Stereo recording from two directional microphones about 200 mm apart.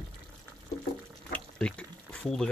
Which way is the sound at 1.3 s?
5° left (ahead or behind).